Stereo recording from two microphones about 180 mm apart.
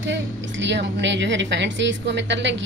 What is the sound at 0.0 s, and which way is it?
A woman's voice, 85° right.